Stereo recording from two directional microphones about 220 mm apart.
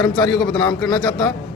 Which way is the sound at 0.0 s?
15° left (ahead or behind).